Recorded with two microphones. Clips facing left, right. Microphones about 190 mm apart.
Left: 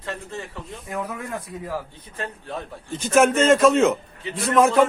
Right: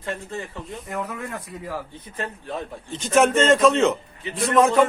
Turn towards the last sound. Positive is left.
turn(degrees=0)  # may be behind; listen again after turning